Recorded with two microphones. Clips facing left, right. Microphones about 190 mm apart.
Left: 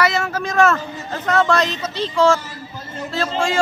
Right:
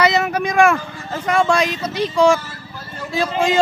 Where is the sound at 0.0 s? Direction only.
20° right (ahead or behind).